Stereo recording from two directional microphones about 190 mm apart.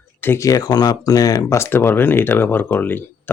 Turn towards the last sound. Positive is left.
turn(degrees=10)  # may be behind; listen again after turning